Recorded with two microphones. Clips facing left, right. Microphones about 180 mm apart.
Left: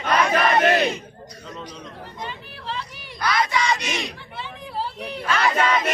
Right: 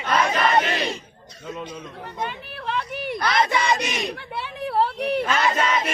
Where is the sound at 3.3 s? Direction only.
25° right (ahead or behind).